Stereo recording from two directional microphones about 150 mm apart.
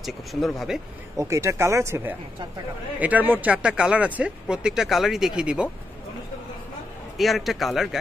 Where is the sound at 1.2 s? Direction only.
20° right (ahead or behind).